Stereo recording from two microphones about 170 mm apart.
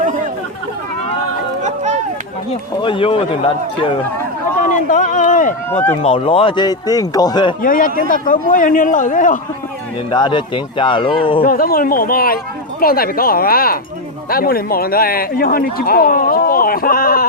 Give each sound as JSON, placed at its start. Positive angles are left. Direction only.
{"t": 2.8, "sound": "speech", "side_deg": 30}
{"t": 4.7, "sound": "speech", "side_deg": 50}
{"t": 5.7, "sound": "speech", "side_deg": 10}
{"t": 6.0, "sound": "speech", "side_deg": 35}
{"t": 7.6, "sound": "speech", "side_deg": 55}
{"t": 10.1, "sound": "speech", "side_deg": 25}
{"t": 11.4, "sound": "speech", "side_deg": 60}